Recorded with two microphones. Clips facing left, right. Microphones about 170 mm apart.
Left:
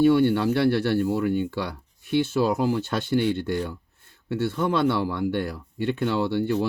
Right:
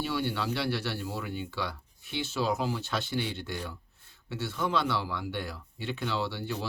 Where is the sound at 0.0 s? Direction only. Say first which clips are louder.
Left 13 dB; 55° left (ahead or behind).